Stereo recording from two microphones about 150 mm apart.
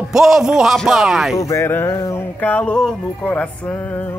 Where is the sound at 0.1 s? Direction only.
Centre (ahead or behind).